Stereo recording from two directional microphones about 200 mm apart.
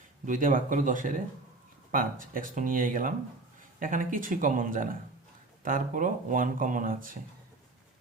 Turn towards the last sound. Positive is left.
turn(degrees=-45)  # may be behind; listen again after turning